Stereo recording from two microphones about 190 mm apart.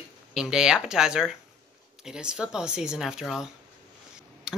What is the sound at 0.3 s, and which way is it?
Speech, 5° right (ahead or behind).